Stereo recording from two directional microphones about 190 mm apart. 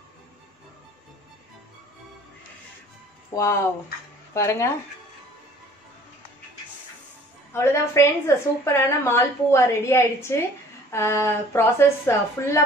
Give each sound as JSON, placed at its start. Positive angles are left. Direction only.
{"t": 3.3, "sound": "a woman's voice", "side_deg": 15}
{"t": 7.5, "sound": "a woman's voice", "side_deg": 15}